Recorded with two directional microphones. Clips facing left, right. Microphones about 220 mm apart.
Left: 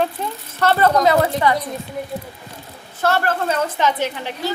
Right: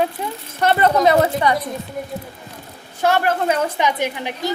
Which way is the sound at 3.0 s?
15° right (ahead or behind).